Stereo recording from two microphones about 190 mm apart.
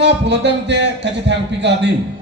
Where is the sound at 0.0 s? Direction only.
65° right (ahead or behind).